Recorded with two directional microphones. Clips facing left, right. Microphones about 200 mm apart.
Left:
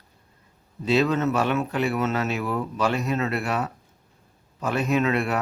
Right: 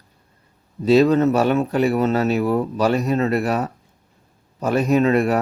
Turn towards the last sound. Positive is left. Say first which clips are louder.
# right 6 dB
turn(degrees=-40)  # may be behind; listen again after turning